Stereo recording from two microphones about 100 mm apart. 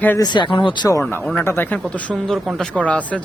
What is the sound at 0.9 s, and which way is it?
Speech, 25° left (ahead or behind).